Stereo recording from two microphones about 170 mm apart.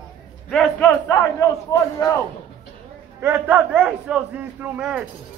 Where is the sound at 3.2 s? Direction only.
10° right (ahead or behind).